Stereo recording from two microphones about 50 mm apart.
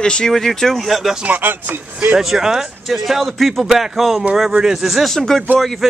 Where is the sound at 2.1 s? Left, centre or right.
Centre.